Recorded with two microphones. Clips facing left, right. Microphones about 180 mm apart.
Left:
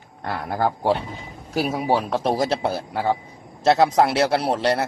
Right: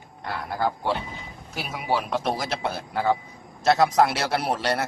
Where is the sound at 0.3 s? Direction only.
45° left (ahead or behind).